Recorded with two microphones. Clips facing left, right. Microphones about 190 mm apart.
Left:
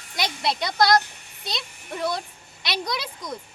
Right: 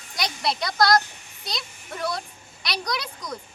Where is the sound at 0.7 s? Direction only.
Centre (ahead or behind).